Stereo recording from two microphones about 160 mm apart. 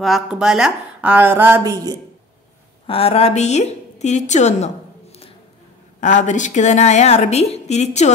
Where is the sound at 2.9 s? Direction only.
40° left (ahead or behind).